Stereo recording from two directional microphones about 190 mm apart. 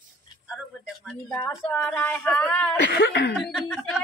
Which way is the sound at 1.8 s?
5° left (ahead or behind).